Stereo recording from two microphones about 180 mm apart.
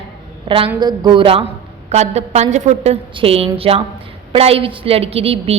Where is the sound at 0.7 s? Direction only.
25° right (ahead or behind).